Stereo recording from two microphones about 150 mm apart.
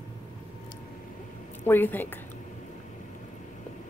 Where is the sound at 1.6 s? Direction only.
15° left (ahead or behind).